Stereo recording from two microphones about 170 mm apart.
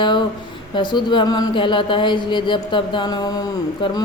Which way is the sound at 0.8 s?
25° left (ahead or behind).